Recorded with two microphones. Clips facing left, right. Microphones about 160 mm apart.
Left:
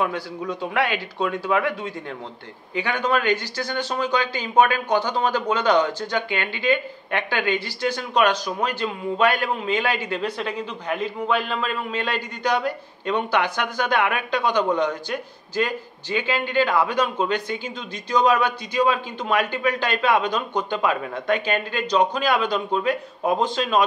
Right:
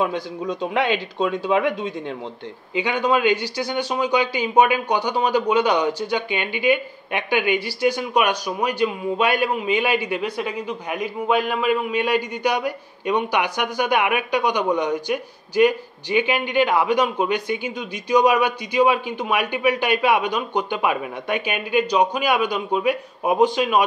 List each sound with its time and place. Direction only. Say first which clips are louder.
0.0 s speech: right 2 dB; 20° right (ahead or behind)